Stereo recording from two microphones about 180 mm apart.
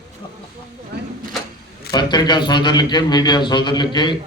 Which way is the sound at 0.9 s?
65° right (ahead or behind).